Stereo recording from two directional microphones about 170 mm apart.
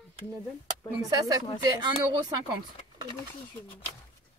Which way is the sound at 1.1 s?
20° right (ahead or behind).